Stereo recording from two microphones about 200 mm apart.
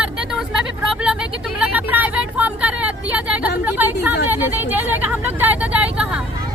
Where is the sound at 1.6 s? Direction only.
10° right (ahead or behind).